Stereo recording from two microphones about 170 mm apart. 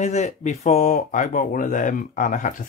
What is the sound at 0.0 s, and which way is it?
Speech, 45° left (ahead or behind).